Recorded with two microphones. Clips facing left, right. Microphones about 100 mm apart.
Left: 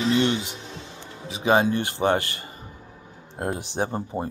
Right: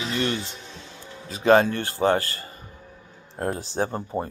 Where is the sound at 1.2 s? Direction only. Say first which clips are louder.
Right 3 dB; 10° left (ahead or behind).